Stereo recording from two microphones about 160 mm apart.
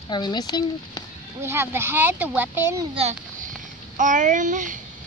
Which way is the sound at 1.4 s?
15° right (ahead or behind).